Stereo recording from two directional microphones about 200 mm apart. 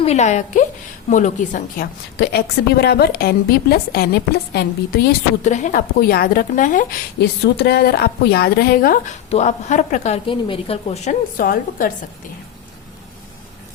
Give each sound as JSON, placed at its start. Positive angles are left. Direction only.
{"t": 0.0, "sound": "a woman's voice", "side_deg": 35}
{"t": 5.4, "sound": "a woman's voice", "side_deg": 40}
{"t": 7.2, "sound": "a woman's voice", "side_deg": 55}
{"t": 9.3, "sound": "a woman's voice", "side_deg": 35}